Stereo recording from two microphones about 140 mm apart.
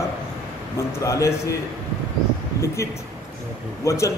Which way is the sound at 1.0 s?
20° left (ahead or behind).